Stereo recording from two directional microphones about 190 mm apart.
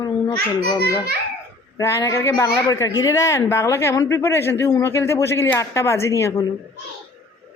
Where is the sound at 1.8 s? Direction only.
15° left (ahead or behind).